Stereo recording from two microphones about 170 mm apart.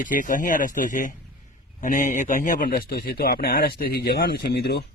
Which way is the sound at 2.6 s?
60° left (ahead or behind).